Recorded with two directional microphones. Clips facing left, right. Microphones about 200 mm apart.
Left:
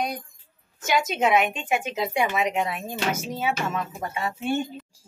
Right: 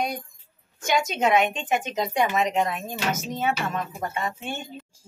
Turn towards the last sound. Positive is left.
turn(degrees=10)  # may be behind; listen again after turning